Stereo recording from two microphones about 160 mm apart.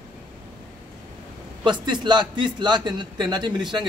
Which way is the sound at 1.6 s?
30° right (ahead or behind).